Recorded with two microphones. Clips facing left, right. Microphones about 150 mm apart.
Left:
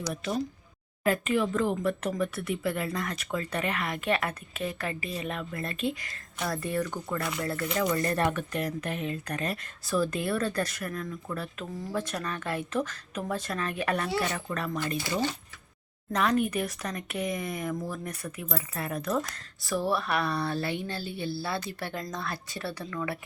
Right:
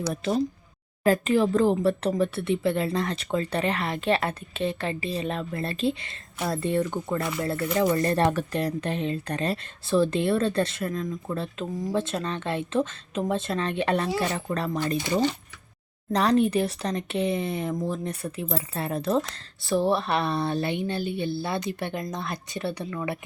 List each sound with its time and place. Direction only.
0.1 s a woman's voice: 30° right (ahead or behind)
7.2 s speech: centre (ahead or behind)
7.8 s speech: 25° right (ahead or behind)
15.0 s speech: 20° right (ahead or behind)
16.1 s speech: 30° right (ahead or behind)